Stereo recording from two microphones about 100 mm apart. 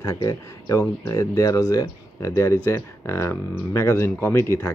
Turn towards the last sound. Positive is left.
turn(degrees=25)  # may be behind; listen again after turning